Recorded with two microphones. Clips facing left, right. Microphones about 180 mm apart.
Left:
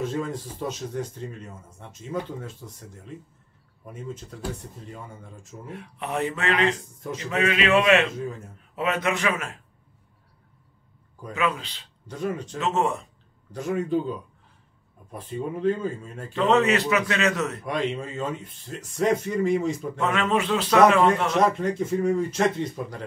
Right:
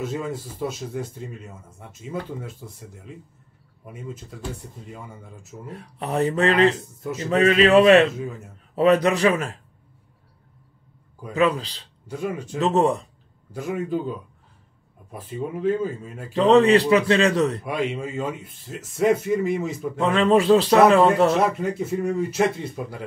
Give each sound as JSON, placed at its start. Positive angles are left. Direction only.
{"t": 0.0, "sound": "speech", "side_deg": -10}
{"t": 5.7, "sound": "a man's voice", "side_deg": -35}
{"t": 11.3, "sound": "a man's voice", "side_deg": -35}
{"t": 12.1, "sound": "speech", "side_deg": -10}
{"t": 12.5, "sound": "a man's voice", "side_deg": -35}
{"t": 13.5, "sound": "speech", "side_deg": -5}
{"t": 16.3, "sound": "a man's voice", "side_deg": -35}
{"t": 17.6, "sound": "speech", "side_deg": -10}
{"t": 20.0, "sound": "a man's voice", "side_deg": -30}
{"t": 21.4, "sound": "speech", "side_deg": -5}